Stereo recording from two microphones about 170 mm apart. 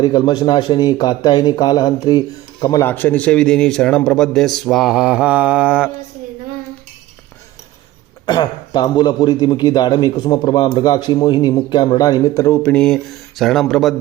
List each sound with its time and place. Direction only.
0.0 s a man's voice: 25° left (ahead or behind)
2.8 s a man's voice: 10° left (ahead or behind); by 5.9 s 5° right (ahead or behind)
8.3 s a man's voice: 25° left (ahead or behind); by 13.9 s centre (ahead or behind)